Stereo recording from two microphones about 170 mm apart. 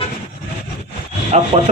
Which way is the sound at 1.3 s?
40° right (ahead or behind).